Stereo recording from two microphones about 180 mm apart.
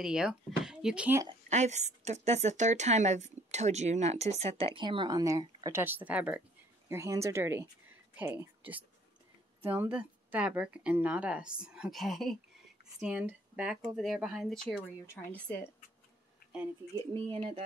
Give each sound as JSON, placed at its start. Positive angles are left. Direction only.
{"t": 0.0, "sound": "speech", "side_deg": -5}
{"t": 1.5, "sound": "a woman's voice", "side_deg": -40}
{"t": 15.3, "sound": "speech", "side_deg": 10}
{"t": 17.1, "sound": "speech", "side_deg": -30}